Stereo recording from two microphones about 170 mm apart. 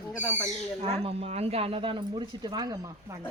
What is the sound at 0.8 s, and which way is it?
Speech, 35° right (ahead or behind).